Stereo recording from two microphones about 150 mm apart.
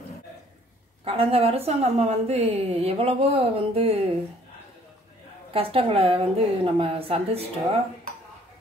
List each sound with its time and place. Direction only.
1.0 s a woman's voice: 40° right (ahead or behind)
5.5 s a woman's voice: 40° right (ahead or behind)